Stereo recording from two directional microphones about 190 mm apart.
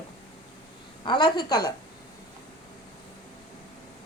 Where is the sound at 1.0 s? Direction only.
25° left (ahead or behind).